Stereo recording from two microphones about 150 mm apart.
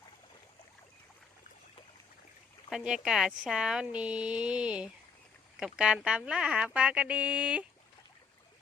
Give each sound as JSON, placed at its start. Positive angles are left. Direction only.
{"t": 2.6, "sound": "speech", "side_deg": -5}